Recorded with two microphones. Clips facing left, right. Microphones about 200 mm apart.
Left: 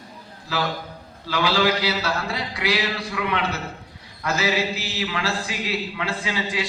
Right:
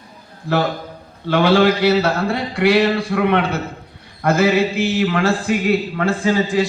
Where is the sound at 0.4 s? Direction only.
55° right (ahead or behind).